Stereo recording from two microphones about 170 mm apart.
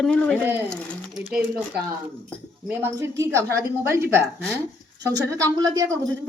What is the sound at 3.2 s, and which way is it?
A woman's voice, 15° right (ahead or behind).